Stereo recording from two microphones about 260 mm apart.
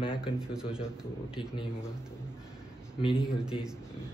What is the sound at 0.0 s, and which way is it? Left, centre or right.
Speech, centre.